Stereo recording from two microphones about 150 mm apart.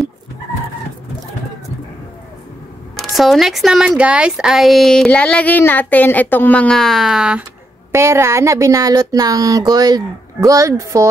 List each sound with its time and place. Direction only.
3.0 s speech: centre (ahead or behind)
7.9 s speech: 20° right (ahead or behind)